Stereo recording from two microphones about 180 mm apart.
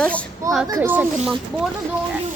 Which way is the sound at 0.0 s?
5° left (ahead or behind).